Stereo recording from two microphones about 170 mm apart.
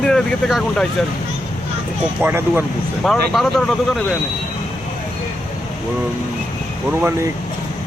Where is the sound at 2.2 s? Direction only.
10° right (ahead or behind).